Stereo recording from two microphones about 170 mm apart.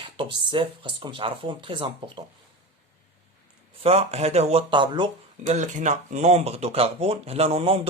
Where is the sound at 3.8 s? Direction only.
40° right (ahead or behind).